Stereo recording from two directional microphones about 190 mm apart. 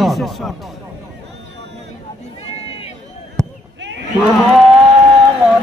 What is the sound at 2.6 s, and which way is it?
Run, 30° left (ahead or behind).